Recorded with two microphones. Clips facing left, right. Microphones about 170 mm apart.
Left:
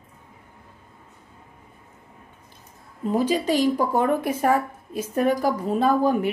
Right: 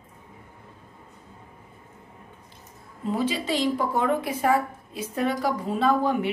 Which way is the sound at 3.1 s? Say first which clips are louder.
Left 4 dB; 45° left (ahead or behind).